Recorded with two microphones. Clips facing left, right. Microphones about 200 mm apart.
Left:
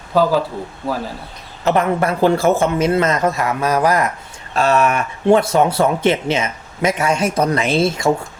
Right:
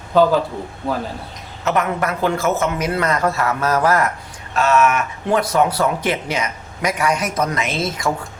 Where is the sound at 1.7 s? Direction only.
30° left (ahead or behind); by 4.1 s 15° left (ahead or behind).